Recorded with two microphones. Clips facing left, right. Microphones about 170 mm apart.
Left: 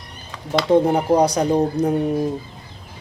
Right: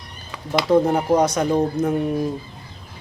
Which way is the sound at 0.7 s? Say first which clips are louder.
Left 1 dB; 30° left (ahead or behind).